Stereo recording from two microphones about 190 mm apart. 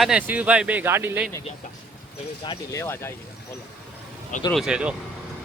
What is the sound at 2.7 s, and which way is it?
Speech, 15° left (ahead or behind).